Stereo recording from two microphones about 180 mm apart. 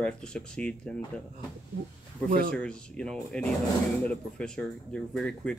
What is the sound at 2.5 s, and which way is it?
Speech, 5° left (ahead or behind).